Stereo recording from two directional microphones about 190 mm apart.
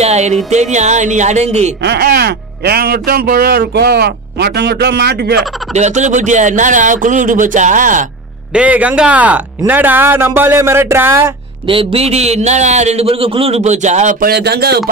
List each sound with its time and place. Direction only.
0.0 s music: 35° right (ahead or behind)
0.5 s a man's voice: 35° right (ahead or behind)
1.8 s speech: 60° right (ahead or behind)
5.8 s a man's voice: 40° right (ahead or behind)
8.5 s speech: 5° right (ahead or behind)
11.6 s a man's voice: 30° right (ahead or behind)
14.3 s speech: 55° right (ahead or behind)